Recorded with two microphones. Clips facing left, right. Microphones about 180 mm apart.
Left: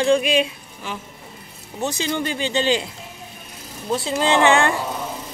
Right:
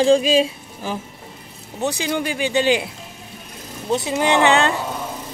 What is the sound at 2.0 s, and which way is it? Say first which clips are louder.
Speech: right 1 dB; 10° right (ahead or behind).